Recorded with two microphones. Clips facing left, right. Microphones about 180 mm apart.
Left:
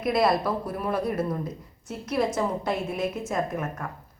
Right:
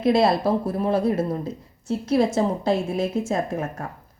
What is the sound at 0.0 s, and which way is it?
Speech, 25° right (ahead or behind).